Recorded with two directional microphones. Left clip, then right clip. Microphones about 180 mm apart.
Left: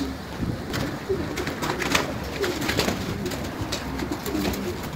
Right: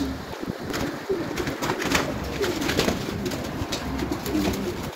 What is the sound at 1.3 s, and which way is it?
Bird, 55° right (ahead or behind).